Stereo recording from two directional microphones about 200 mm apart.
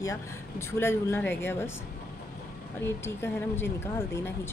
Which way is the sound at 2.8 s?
10° left (ahead or behind).